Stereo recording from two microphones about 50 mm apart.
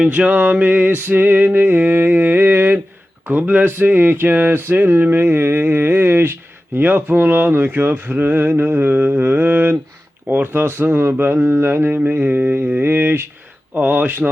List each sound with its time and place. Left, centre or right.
0.1 s music: right
3.2 s speech: right
11.9 s music: right
12.8 s speech: right
13.7 s music: right